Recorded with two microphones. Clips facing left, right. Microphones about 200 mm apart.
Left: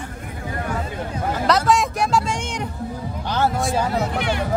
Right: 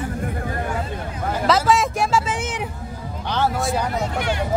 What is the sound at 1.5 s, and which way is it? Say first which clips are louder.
Vehicle: right 1 dB; centre (ahead or behind).